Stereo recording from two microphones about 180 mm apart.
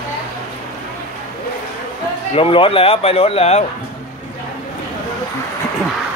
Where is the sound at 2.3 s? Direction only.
30° left (ahead or behind).